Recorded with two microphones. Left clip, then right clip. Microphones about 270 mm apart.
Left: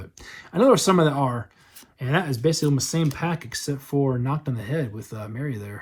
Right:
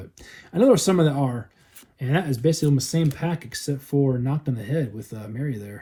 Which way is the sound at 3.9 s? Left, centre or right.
Left.